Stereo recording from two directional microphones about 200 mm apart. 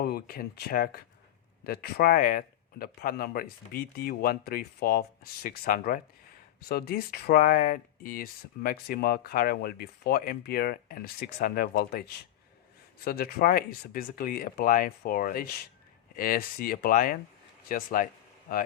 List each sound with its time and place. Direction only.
0.0 s speech: 50° left (ahead or behind)